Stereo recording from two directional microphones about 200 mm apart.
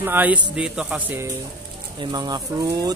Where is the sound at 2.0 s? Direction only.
20° right (ahead or behind).